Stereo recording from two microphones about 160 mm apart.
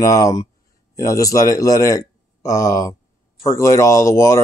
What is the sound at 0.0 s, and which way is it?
Speech, 20° left (ahead or behind).